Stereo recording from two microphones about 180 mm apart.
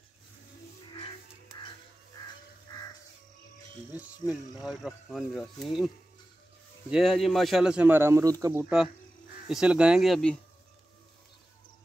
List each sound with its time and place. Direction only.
4.3 s speech: centre (ahead or behind)
6.9 s speech: centre (ahead or behind); by 8.5 s 20° right (ahead or behind)
8.6 s speech: 5° right (ahead or behind)